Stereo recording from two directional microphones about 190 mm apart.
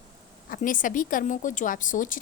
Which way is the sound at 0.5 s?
45° left (ahead or behind).